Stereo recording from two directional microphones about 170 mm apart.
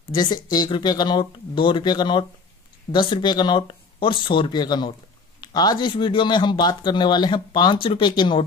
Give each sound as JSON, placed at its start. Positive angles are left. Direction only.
{"t": 0.1, "sound": "speech", "side_deg": 25}